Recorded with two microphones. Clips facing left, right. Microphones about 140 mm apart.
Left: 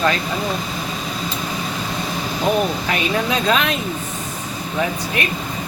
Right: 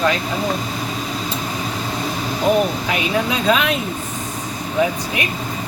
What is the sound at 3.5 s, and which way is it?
Speech, 10° right (ahead or behind).